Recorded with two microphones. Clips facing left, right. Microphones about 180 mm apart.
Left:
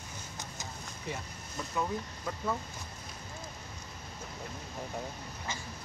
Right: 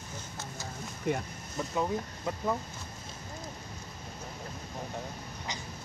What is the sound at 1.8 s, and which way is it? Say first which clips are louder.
Speech: right 2 dB; 20° right (ahead or behind).